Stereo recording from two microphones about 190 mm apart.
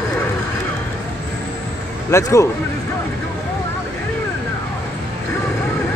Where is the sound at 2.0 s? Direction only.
15° left (ahead or behind).